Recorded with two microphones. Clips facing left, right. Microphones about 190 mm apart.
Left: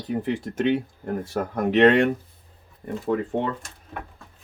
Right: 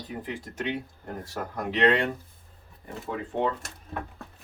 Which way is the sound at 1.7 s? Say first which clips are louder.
Left 7 dB; 60° left (ahead or behind).